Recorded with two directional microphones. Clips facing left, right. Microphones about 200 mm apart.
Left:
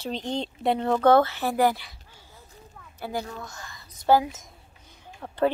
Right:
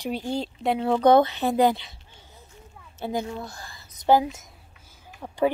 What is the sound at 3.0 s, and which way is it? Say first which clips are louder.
Speech: right 3 dB; 20° right (ahead or behind).